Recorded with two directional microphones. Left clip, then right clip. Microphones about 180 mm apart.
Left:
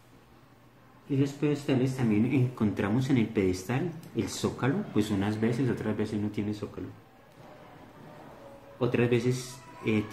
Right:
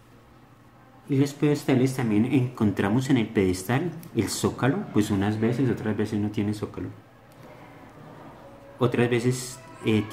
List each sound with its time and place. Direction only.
1.1 s speech: 25° right (ahead or behind)
8.7 s speech: 20° right (ahead or behind)